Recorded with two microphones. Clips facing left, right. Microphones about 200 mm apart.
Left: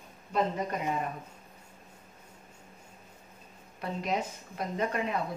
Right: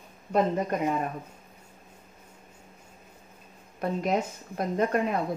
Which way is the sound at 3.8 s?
50° right (ahead or behind).